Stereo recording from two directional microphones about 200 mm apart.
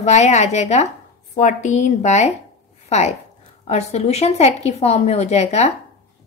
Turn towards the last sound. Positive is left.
turn(degrees=35)  # may be behind; listen again after turning